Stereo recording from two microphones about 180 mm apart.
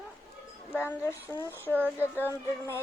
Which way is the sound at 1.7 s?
10° right (ahead or behind).